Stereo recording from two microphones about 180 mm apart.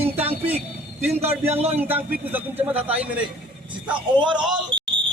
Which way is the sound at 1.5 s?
35° right (ahead or behind).